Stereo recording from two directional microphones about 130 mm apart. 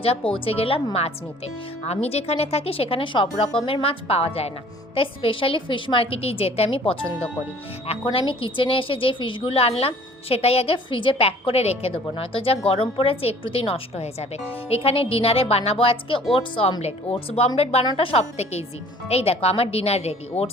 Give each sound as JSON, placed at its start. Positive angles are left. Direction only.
{"t": 0.0, "sound": "a woman's voice", "side_deg": 45}
{"t": 1.8, "sound": "a woman's voice", "side_deg": 55}